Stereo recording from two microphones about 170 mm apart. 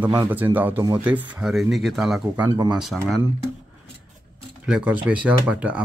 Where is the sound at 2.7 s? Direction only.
Centre (ahead or behind).